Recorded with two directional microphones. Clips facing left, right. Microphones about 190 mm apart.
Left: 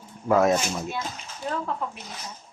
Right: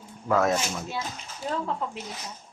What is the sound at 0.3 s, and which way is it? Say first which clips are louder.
Speech: left 3 dB; 20° left (ahead or behind).